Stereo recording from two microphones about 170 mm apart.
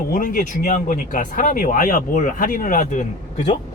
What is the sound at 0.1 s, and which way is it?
Speech, 55° left (ahead or behind).